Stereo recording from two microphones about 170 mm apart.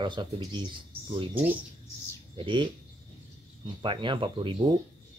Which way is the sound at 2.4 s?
30° right (ahead or behind).